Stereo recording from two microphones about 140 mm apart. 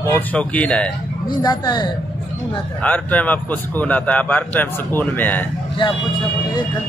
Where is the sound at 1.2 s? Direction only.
30° left (ahead or behind).